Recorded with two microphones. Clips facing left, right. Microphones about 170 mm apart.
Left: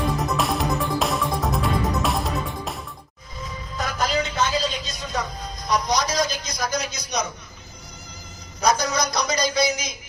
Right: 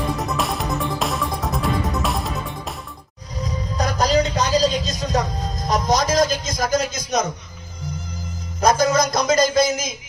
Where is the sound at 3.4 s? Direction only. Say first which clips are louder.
Right 6 dB; 40° right (ahead or behind).